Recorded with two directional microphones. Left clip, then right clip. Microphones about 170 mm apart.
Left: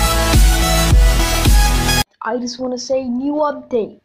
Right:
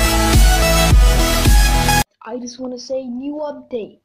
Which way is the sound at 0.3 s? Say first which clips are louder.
Right 1 dB; centre (ahead or behind).